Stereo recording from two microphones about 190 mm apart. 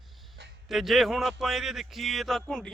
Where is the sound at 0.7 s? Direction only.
Centre (ahead or behind).